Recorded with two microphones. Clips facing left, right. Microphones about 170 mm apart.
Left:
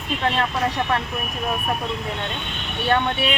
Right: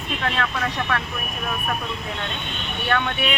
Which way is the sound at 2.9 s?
25° left (ahead or behind).